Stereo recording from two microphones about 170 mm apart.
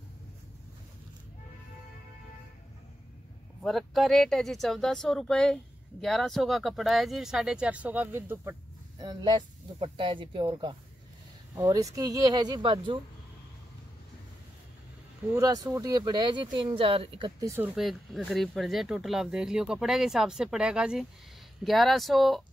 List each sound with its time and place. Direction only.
3.6 s speech: centre (ahead or behind)
9.0 s speech: 25° right (ahead or behind)
15.3 s speech: 20° right (ahead or behind)
17.4 s speech: 15° right (ahead or behind)
17.7 s speech: centre (ahead or behind)